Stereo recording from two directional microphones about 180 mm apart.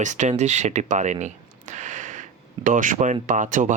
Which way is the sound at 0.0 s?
40° right (ahead or behind).